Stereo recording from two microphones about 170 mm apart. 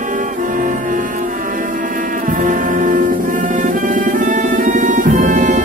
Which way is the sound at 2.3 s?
50° right (ahead or behind).